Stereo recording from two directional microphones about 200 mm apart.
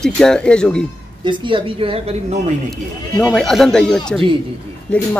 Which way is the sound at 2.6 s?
Centre (ahead or behind).